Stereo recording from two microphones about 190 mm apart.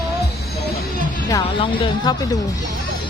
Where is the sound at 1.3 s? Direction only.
20° left (ahead or behind).